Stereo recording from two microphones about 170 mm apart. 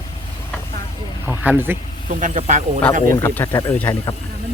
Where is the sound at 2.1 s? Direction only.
45° right (ahead or behind).